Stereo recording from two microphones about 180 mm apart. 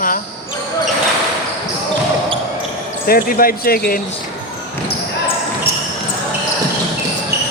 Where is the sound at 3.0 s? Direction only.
55° left (ahead or behind).